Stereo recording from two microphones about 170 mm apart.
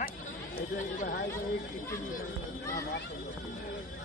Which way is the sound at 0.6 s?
50° left (ahead or behind).